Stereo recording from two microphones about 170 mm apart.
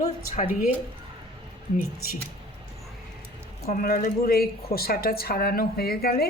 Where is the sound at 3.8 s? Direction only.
60° left (ahead or behind).